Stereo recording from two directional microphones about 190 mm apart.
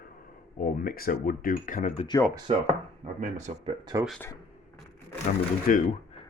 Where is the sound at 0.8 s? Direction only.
50° left (ahead or behind).